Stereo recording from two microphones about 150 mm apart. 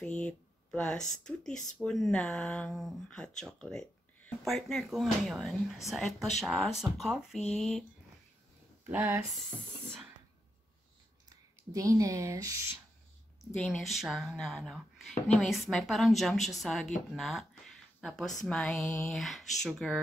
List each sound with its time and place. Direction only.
0.0 s speech: 5° left (ahead or behind)
8.9 s speech: 15° right (ahead or behind)
11.2 s speech: 20° right (ahead or behind)
13.6 s speech: centre (ahead or behind)